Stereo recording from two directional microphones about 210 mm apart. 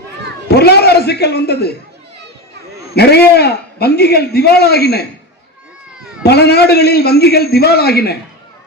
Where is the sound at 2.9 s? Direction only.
50° left (ahead or behind).